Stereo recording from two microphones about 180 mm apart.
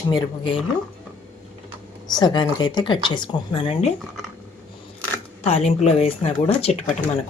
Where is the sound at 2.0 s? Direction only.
25° left (ahead or behind).